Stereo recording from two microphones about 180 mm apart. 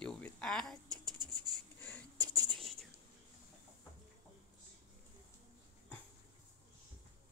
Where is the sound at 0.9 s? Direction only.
25° right (ahead or behind).